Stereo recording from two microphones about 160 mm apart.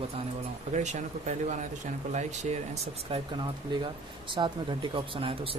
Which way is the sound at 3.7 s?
30° right (ahead or behind).